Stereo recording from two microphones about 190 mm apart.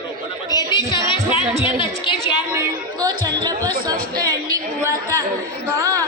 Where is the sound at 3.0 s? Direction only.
20° right (ahead or behind).